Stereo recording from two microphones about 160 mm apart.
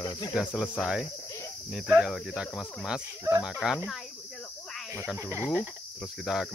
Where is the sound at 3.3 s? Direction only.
15° right (ahead or behind).